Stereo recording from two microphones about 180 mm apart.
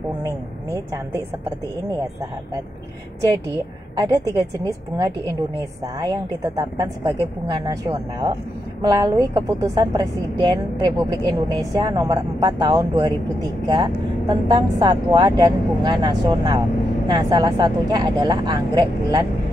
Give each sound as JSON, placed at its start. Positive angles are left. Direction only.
{"t": 0.2, "sound": "speech", "side_deg": -15}
{"t": 3.2, "sound": "a woman's voice", "side_deg": -20}